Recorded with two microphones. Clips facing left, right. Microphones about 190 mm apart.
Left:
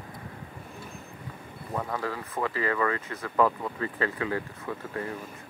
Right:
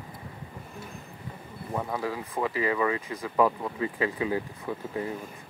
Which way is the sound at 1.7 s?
10° right (ahead or behind).